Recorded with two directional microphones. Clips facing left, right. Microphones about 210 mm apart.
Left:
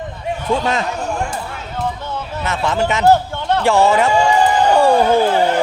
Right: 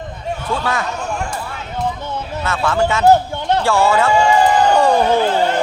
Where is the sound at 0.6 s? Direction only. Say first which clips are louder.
Left 2 dB; 20° left (ahead or behind).